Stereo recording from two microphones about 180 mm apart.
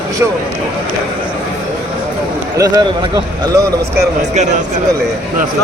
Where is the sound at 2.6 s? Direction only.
20° right (ahead or behind).